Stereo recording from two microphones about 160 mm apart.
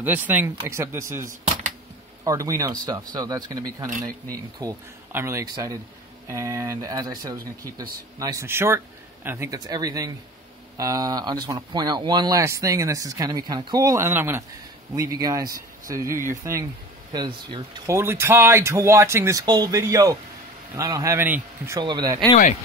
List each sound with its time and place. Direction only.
0.0 s speech: 10° right (ahead or behind)
17.1 s speech: 30° right (ahead or behind)
17.9 s speech: 15° right (ahead or behind)
21.7 s speech: 30° right (ahead or behind)